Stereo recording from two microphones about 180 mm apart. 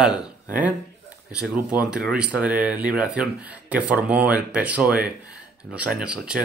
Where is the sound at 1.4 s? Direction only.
5° right (ahead or behind).